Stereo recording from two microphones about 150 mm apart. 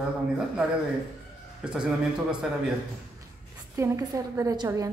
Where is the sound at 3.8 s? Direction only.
20° right (ahead or behind).